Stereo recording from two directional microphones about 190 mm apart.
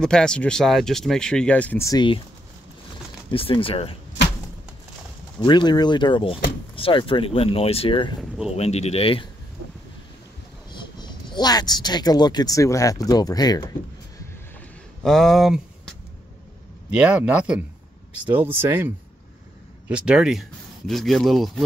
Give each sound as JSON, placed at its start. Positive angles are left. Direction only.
{"t": 0.0, "sound": "speech", "side_deg": 5}
{"t": 3.3, "sound": "speech", "side_deg": 30}
{"t": 5.4, "sound": "speech", "side_deg": 25}
{"t": 10.7, "sound": "speech", "side_deg": 25}
{"t": 15.0, "sound": "speech", "side_deg": 0}
{"t": 16.9, "sound": "speech", "side_deg": -5}
{"t": 19.9, "sound": "speech", "side_deg": -5}